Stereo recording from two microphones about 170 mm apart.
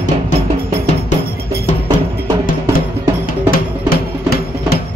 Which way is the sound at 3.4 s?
65° left (ahead or behind).